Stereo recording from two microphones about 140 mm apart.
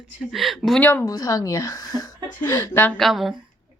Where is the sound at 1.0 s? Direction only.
25° left (ahead or behind).